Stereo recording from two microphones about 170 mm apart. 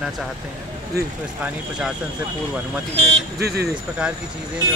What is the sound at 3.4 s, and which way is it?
Speech, 70° right (ahead or behind).